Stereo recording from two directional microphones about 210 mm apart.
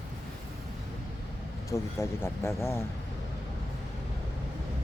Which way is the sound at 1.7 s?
15° left (ahead or behind).